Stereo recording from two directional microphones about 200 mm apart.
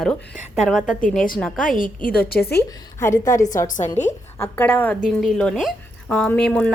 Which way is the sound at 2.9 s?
15° left (ahead or behind).